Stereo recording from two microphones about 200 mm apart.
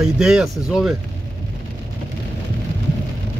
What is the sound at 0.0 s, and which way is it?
Speech, centre (ahead or behind).